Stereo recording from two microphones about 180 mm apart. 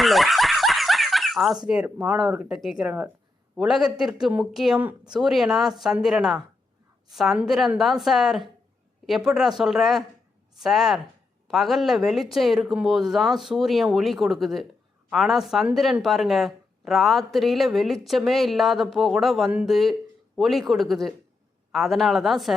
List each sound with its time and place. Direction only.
0.0 s snicker: centre (ahead or behind)
1.6 s speech: 5° right (ahead or behind)